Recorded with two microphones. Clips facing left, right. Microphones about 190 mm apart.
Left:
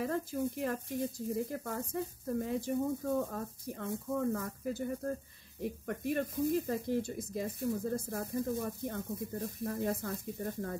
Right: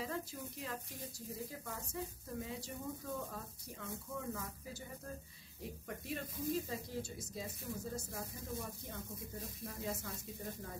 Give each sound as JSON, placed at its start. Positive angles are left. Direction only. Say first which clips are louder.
{"t": 0.0, "sound": "speech", "louder": "left 9 dB", "side_deg": 50}